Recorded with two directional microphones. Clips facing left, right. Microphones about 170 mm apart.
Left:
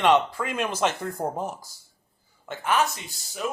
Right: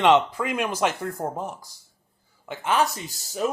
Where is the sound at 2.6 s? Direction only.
30° right (ahead or behind).